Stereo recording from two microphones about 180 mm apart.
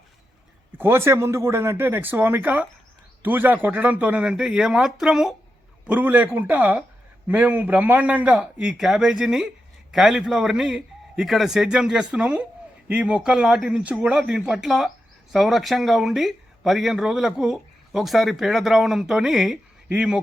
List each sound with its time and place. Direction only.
0.7 s a man's voice: 10° right (ahead or behind)